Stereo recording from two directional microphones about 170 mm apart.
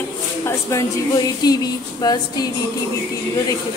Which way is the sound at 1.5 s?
20° left (ahead or behind).